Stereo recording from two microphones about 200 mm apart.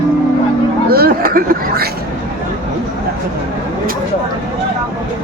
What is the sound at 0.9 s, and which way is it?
Speech, 50° right (ahead or behind).